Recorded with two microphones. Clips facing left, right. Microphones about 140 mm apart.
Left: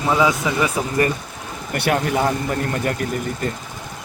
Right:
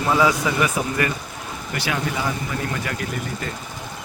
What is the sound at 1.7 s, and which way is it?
Speech, 55° left (ahead or behind).